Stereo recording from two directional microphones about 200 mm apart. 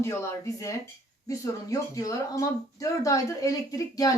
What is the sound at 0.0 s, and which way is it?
Speech, 15° left (ahead or behind).